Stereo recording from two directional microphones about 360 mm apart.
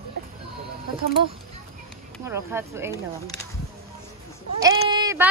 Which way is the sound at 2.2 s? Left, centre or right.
Centre.